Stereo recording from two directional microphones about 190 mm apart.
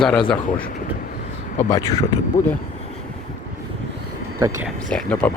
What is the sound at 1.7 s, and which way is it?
Speech, 20° left (ahead or behind).